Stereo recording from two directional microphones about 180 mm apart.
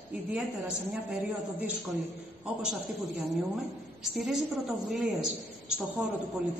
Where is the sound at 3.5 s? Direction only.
Centre (ahead or behind).